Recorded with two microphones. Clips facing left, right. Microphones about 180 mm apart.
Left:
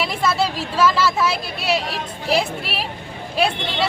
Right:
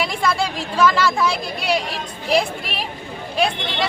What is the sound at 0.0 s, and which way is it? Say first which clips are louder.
Speech: left 1 dB; 5° left (ahead or behind).